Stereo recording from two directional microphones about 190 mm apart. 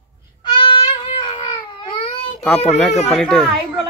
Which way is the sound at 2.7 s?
35° left (ahead or behind).